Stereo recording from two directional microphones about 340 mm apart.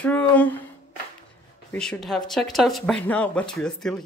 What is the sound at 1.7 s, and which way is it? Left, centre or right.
Speech, centre.